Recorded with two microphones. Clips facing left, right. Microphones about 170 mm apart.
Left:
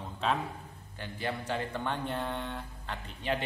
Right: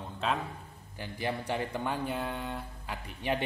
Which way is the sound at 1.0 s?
15° right (ahead or behind).